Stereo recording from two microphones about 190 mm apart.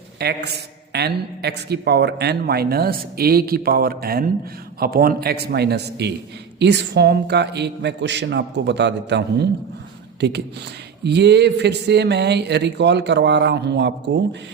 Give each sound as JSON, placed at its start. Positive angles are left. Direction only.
{"t": 0.2, "sound": "a man's voice", "side_deg": -60}